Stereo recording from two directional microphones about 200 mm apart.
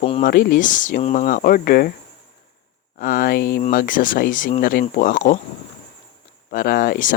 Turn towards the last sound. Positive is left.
turn(degrees=45)  # may be behind; listen again after turning